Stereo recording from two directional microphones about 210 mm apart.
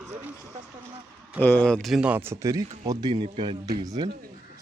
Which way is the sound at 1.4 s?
10° left (ahead or behind).